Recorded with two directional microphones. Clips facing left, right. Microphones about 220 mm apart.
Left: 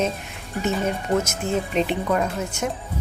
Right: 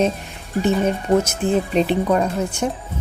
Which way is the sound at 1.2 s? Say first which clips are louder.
Right 5 dB; 35° right (ahead or behind).